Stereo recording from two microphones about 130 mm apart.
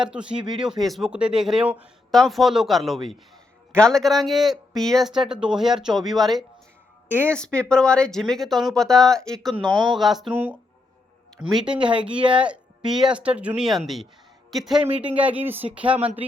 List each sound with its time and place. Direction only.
0.0 s a man's voice: 5° right (ahead or behind)
2.0 s a man's voice: centre (ahead or behind)
11.3 s a man's voice: 5° right (ahead or behind)
14.8 s speech: 45° right (ahead or behind)
15.2 s speech: 10° right (ahead or behind)